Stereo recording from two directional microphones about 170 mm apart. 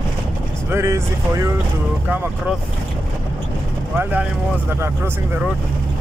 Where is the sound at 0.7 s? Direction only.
15° right (ahead or behind).